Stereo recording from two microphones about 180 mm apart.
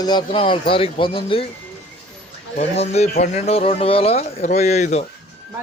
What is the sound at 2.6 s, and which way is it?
Speech, 35° left (ahead or behind).